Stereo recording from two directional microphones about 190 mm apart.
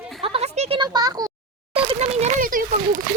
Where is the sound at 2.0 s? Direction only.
40° right (ahead or behind).